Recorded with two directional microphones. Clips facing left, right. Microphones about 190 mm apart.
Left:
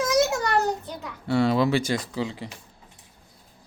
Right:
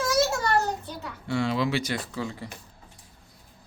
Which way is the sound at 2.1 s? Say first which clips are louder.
Left 3 dB; 20° left (ahead or behind).